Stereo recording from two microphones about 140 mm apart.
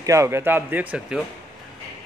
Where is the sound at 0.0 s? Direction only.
20° right (ahead or behind).